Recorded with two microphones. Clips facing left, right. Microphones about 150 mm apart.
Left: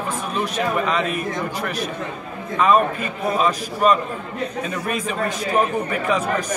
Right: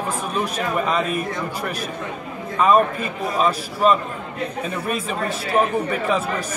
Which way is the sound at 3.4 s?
5° right (ahead or behind).